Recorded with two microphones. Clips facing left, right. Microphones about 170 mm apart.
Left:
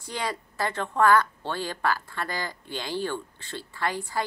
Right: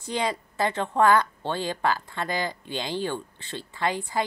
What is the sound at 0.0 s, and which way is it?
A woman's voice, 20° right (ahead or behind).